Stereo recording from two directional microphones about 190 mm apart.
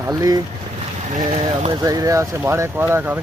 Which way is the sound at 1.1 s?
40° right (ahead or behind).